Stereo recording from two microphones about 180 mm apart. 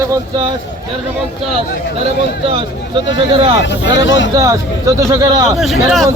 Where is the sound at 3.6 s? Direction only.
85° left.